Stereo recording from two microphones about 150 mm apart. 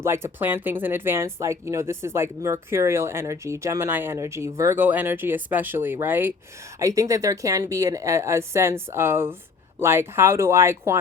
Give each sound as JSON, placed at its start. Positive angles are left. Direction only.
{"t": 0.0, "sound": "speech", "side_deg": -15}